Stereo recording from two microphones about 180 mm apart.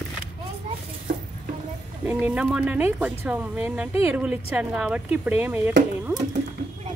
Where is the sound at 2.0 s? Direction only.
5° right (ahead or behind).